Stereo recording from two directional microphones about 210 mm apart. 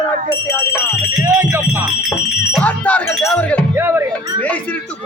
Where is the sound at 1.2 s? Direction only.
10° right (ahead or behind).